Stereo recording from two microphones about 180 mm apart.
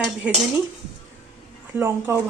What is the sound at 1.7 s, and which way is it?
Speech, 15° right (ahead or behind).